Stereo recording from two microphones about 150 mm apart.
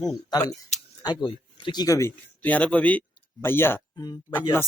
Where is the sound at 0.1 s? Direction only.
25° left (ahead or behind).